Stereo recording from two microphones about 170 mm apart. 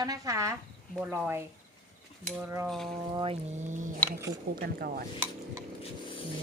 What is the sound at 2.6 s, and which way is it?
Speech, centre (ahead or behind).